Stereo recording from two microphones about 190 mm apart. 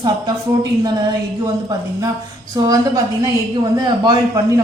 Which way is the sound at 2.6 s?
20° right (ahead or behind).